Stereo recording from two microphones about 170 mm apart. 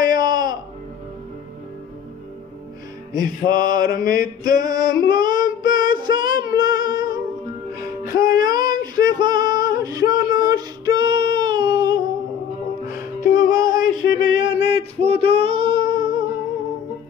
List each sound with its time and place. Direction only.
0.0 s music: 25° right (ahead or behind)
3.2 s mantra: 25° right (ahead or behind)
4.0 s a sound: 55° left (ahead or behind)
4.6 s female singing: 20° right (ahead or behind)
8.0 s music: 20° right (ahead or behind)
12.9 s music: 55° left (ahead or behind)
13.5 s a sound: 20° right (ahead or behind)